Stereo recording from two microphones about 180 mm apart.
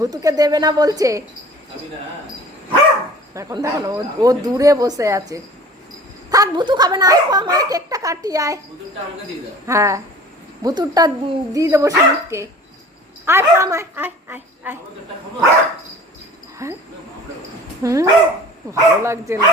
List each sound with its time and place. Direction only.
0.0 s speech: 20° right (ahead or behind)
3.3 s speech: 20° right (ahead or behind)
9.6 s speech: 15° right (ahead or behind)
16.6 s speech: 15° right (ahead or behind)
17.8 s speech: 15° right (ahead or behind)